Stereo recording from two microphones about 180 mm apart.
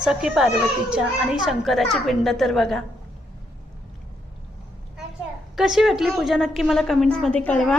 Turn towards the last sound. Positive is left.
turn(degrees=5)  # may be behind; listen again after turning